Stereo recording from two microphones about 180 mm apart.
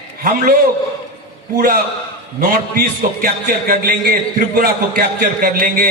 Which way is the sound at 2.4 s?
50° right (ahead or behind).